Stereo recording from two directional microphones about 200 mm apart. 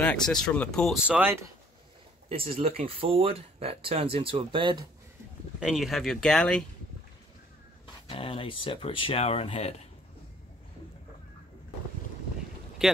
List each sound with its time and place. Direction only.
0.0 s speech: 5° left (ahead or behind)
2.2 s speech: 25° right (ahead or behind)
5.6 s speech: centre (ahead or behind)
8.1 s speech: 25° left (ahead or behind)
12.8 s speech: centre (ahead or behind)